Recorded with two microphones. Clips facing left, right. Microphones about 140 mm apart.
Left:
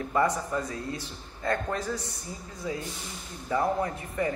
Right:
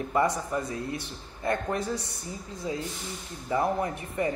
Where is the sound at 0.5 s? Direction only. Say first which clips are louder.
Right 1 dB; 20° right (ahead or behind).